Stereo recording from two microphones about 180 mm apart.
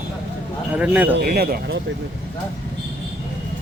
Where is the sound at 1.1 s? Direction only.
55° right (ahead or behind).